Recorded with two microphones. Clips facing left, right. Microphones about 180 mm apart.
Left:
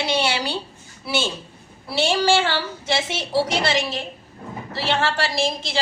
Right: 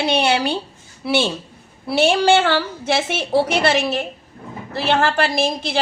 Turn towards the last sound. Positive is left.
turn(degrees=-55)  # may be behind; listen again after turning